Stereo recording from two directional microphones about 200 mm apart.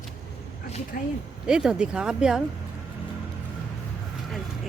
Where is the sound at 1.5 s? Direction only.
5° right (ahead or behind).